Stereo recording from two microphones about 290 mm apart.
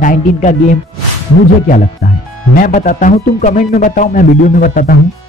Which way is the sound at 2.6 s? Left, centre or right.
Left.